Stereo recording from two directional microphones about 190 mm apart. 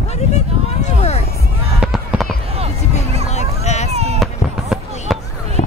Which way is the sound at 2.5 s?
30° right (ahead or behind).